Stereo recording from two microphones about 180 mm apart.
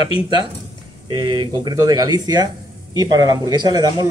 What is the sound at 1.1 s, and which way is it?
Speech, 25° right (ahead or behind).